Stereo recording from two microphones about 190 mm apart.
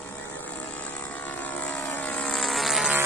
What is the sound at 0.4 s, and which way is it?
Vehicle, 10° left (ahead or behind).